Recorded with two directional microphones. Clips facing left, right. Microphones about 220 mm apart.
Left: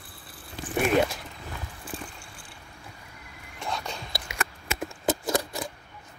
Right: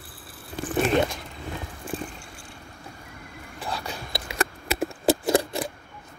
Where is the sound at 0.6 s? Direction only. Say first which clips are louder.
Right 6 dB; 50° right (ahead or behind).